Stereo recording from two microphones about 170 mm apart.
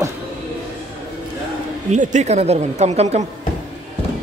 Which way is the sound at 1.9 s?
45° right (ahead or behind).